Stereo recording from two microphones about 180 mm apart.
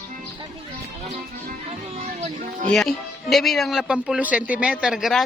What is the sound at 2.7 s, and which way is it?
A man's voice, centre (ahead or behind).